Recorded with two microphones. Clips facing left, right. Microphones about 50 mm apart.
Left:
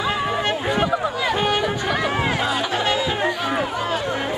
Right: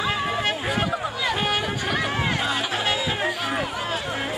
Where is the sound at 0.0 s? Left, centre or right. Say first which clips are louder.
Left 2 dB; centre.